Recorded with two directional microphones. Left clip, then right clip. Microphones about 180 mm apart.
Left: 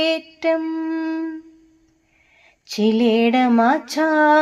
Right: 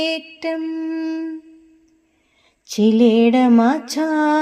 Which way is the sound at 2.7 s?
40° right (ahead or behind).